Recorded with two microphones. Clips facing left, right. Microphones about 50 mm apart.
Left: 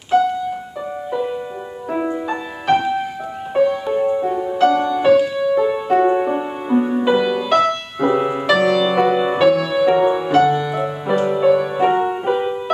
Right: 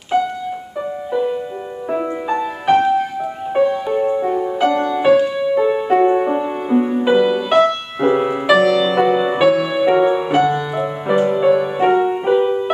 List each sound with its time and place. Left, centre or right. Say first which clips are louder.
1.9 s music: right 1 dB; centre
2.3 s music: right 5 dB; centre
8.6 s music: right 1 dB; centre